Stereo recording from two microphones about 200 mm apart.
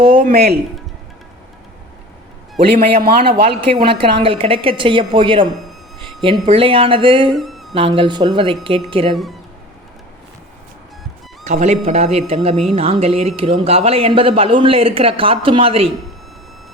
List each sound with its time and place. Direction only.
0.1 s speech: 45° right (ahead or behind)
3.0 s a man's voice: 50° right (ahead or behind)
3.8 s a woman's voice: 25° right (ahead or behind)
5.6 s a sound: centre (ahead or behind)
6.4 s a woman's voice: 30° right (ahead or behind)
7.3 s a sound: centre (ahead or behind)
7.7 s a woman's voice: 25° right (ahead or behind)
11.4 s a woman's voice: 35° right (ahead or behind)